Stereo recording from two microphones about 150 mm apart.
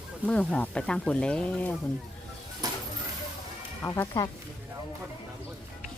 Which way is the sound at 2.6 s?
25° right (ahead or behind).